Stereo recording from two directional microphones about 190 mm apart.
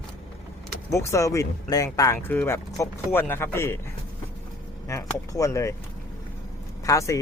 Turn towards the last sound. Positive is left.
turn(degrees=15)  # may be behind; listen again after turning